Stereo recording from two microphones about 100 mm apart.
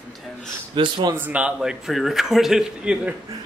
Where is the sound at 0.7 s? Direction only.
50° right (ahead or behind).